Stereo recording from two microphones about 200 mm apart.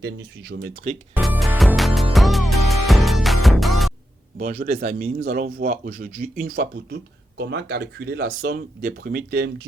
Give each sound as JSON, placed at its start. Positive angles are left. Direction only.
{"t": 0.0, "sound": "speech", "side_deg": -55}
{"t": 1.1, "sound": "music", "side_deg": -5}
{"t": 4.4, "sound": "speech", "side_deg": -45}